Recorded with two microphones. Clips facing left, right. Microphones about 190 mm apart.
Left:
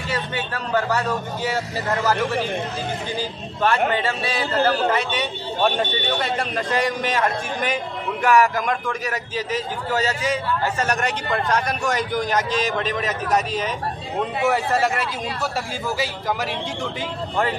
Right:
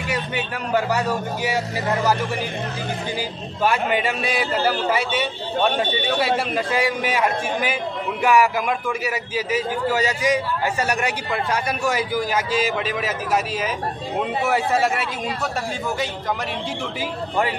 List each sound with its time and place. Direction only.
0.7 s a man's voice: 15° right (ahead or behind)
3.2 s a man's voice: 15° right (ahead or behind)